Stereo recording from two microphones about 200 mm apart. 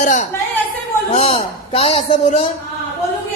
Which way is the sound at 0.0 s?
40° left (ahead or behind).